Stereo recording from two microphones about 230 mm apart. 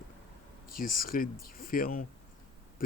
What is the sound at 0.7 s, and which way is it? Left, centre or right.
Speech, left.